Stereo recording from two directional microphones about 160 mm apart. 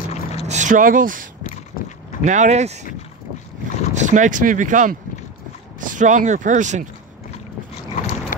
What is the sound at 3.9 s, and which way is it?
Speech, 50° right (ahead or behind).